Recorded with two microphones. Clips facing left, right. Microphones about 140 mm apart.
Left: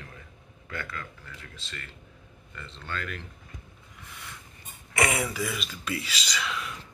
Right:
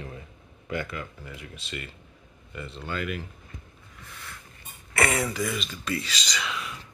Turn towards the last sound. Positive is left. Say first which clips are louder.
# even
turn(degrees=0)  # may be behind; listen again after turning